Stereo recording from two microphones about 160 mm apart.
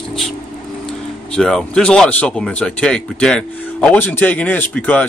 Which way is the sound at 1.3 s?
5° left (ahead or behind).